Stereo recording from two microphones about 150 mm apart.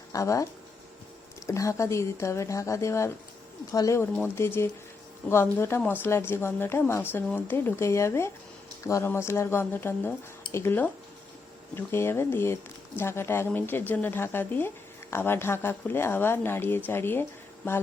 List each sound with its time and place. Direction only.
0.1 s speech: 20° left (ahead or behind)
1.5 s speech: 20° left (ahead or behind)